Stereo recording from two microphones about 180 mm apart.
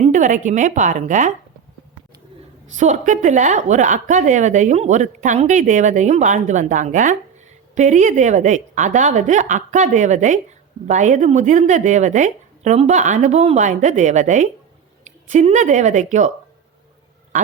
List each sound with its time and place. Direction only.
0.0 s a woman's voice: 45° right (ahead or behind)
2.7 s a woman's voice: 40° right (ahead or behind)